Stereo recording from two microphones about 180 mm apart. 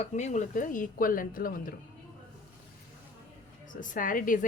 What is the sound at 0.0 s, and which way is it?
Speech, 40° left (ahead or behind).